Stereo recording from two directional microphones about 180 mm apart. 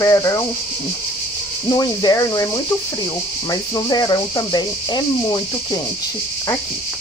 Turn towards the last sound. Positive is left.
turn(degrees=20)  # may be behind; listen again after turning